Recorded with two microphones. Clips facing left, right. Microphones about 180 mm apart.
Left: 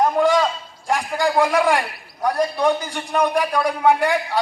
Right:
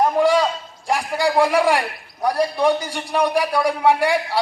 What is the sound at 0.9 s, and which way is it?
A man's voice, 10° right (ahead or behind).